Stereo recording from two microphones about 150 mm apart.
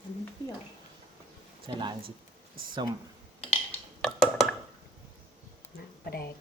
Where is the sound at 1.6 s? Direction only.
30° right (ahead or behind).